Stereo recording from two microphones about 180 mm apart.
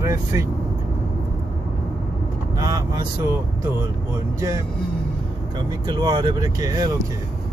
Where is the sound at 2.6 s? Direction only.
20° right (ahead or behind).